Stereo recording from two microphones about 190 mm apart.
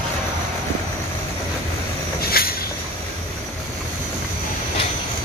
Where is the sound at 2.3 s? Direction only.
50° left (ahead or behind).